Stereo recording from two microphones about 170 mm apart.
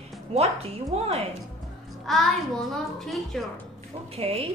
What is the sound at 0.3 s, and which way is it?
Speech, 40° right (ahead or behind).